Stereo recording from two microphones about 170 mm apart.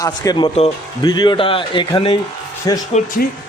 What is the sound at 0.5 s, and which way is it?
Speech, 40° left (ahead or behind).